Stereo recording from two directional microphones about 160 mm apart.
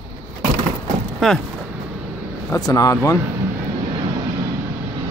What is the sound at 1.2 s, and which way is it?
Speech, centre (ahead or behind).